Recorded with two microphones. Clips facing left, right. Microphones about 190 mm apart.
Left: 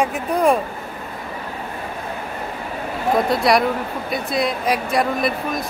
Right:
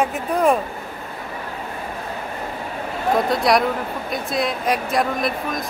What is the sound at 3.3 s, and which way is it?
Speech, centre (ahead or behind).